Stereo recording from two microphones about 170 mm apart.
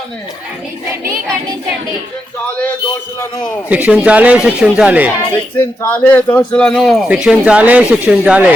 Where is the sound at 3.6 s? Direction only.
10° right (ahead or behind).